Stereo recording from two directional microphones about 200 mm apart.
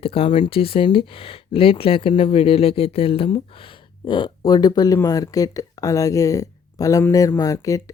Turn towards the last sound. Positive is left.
turn(degrees=15)  # may be behind; listen again after turning